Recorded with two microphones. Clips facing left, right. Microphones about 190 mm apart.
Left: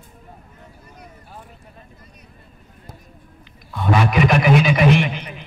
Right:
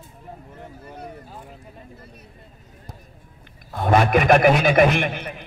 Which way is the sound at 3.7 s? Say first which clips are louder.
Right 1 dB; 50° right (ahead or behind).